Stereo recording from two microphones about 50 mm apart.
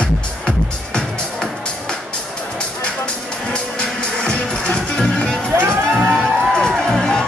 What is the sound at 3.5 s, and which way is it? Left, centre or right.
Music, centre.